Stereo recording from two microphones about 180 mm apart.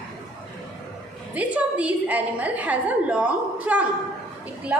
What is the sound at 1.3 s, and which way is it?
A woman's voice, 10° right (ahead or behind).